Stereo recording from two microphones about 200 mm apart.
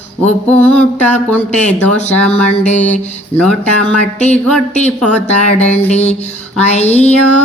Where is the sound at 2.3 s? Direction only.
35° left (ahead or behind).